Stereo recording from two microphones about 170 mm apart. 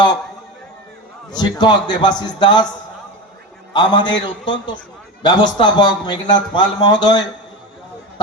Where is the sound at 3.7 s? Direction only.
25° left (ahead or behind).